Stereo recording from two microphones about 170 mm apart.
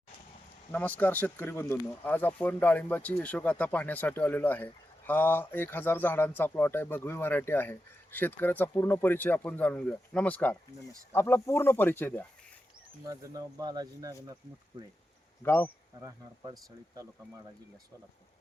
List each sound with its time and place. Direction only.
0.7 s speech: 10° left (ahead or behind)
13.1 s speech: 20° right (ahead or behind)
15.4 s speech: 10° left (ahead or behind)
16.0 s speech: 20° right (ahead or behind)